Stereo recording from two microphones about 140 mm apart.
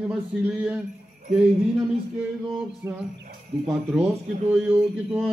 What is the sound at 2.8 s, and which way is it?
Speech, 15° right (ahead or behind).